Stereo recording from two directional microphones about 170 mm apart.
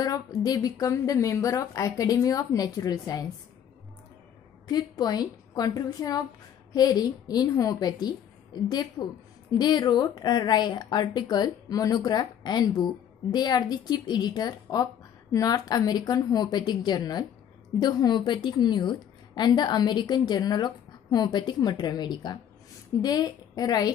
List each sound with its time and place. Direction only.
0.0 s a woman's voice: 20° left (ahead or behind)
4.6 s a woman's voice: 25° left (ahead or behind)